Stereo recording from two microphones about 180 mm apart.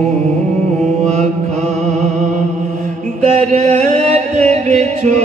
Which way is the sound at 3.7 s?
40° right (ahead or behind).